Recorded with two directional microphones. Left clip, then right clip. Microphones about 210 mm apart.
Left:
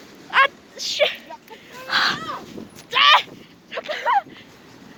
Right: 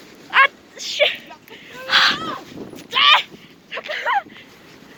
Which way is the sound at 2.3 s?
25° left (ahead or behind).